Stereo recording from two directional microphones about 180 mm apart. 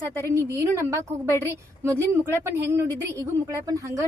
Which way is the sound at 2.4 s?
15° right (ahead or behind).